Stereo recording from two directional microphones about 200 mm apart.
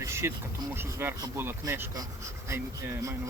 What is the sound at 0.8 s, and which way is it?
Speech, 10° right (ahead or behind).